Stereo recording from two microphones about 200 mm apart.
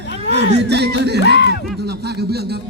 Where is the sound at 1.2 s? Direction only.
60° left (ahead or behind).